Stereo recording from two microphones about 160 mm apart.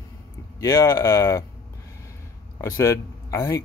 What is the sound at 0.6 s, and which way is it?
Speech, 20° left (ahead or behind).